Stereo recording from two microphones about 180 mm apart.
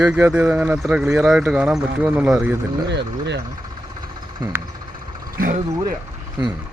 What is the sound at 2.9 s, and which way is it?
Speech, 75° right (ahead or behind).